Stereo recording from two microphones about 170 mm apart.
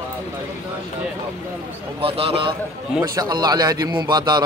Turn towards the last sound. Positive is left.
turn(degrees=-25)  # may be behind; listen again after turning